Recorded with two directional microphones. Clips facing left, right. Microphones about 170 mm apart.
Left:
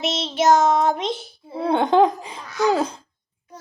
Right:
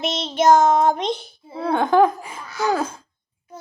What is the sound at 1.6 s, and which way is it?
A child's voice, 20° left (ahead or behind).